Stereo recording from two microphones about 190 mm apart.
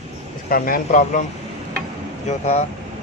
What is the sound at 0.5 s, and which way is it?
Speech, 50° left (ahead or behind).